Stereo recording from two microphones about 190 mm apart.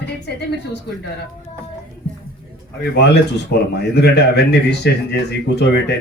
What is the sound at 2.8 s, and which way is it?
A man's voice, 60° left (ahead or behind).